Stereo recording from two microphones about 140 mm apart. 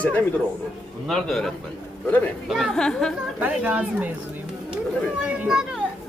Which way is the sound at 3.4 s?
10° right (ahead or behind).